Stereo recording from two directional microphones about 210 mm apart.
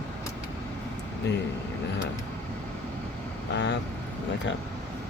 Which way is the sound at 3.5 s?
55° left (ahead or behind).